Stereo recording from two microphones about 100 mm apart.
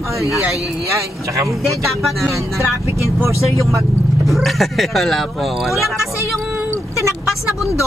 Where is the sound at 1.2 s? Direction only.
35° right (ahead or behind).